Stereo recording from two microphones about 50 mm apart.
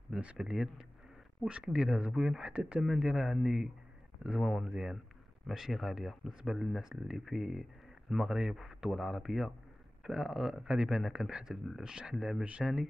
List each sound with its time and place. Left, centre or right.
0.4 s speech: centre
2.6 s speech: centre
8.1 s speech: centre